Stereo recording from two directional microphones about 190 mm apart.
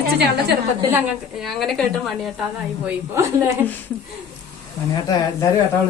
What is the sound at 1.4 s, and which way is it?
Speech, centre (ahead or behind).